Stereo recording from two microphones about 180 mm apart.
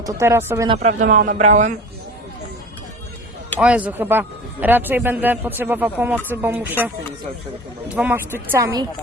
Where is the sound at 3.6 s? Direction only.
5° right (ahead or behind).